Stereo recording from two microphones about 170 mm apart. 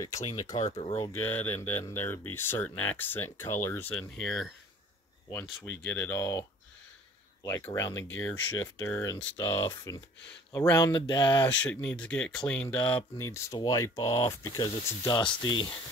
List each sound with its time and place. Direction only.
0.3 s speech: 20° left (ahead or behind)
0.7 s speech: 40° left (ahead or behind)
1.2 s speech: 10° left (ahead or behind)
4.2 s speech: centre (ahead or behind); by 6.4 s 20° left (ahead or behind)
7.4 s speech: 15° left (ahead or behind)
11.4 s speech: 10° left (ahead or behind); by 15.8 s 25° left (ahead or behind)